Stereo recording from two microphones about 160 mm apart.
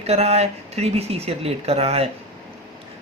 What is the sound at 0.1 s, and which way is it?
A woman's voice, 40° right (ahead or behind).